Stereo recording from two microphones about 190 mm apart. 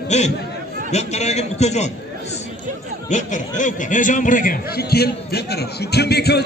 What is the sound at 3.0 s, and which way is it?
A man's voice, 40° left (ahead or behind).